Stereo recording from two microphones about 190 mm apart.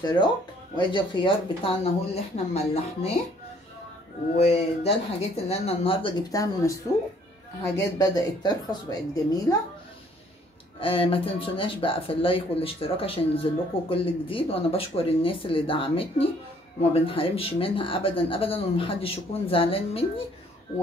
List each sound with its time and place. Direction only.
0.0 s speech: 25° left (ahead or behind)
4.4 s speech: 35° left (ahead or behind); by 6.8 s 15° left (ahead or behind)
8.0 s speech: 20° left (ahead or behind)
10.8 s speech: 30° left (ahead or behind)